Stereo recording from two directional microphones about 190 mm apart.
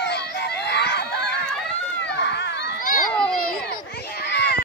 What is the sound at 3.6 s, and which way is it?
Children playing, 60° left (ahead or behind).